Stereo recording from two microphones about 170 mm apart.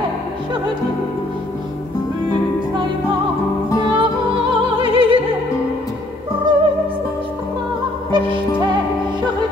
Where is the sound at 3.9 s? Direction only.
30° right (ahead or behind).